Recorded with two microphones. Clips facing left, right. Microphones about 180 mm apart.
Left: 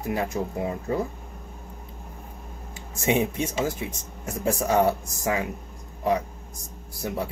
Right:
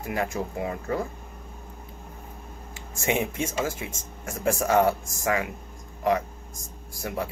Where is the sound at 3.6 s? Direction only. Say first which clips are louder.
Left 2 dB; 15° left (ahead or behind).